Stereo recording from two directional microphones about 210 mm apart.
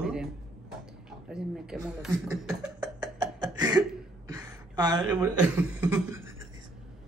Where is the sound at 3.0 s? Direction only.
20° right (ahead or behind).